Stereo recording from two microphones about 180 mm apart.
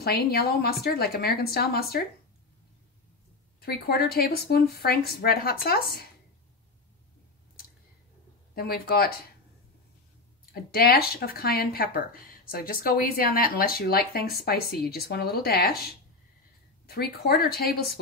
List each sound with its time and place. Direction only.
0.0 s speech: 60° left (ahead or behind)
3.6 s speech: 60° left (ahead or behind)
8.5 s speech: 60° left (ahead or behind)
10.5 s speech: 60° left (ahead or behind)